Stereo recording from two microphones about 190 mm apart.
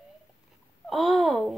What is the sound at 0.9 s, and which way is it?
Speech, centre (ahead or behind).